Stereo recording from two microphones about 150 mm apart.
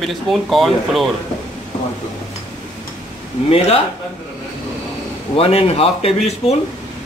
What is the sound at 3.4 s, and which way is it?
Speech, 40° left (ahead or behind).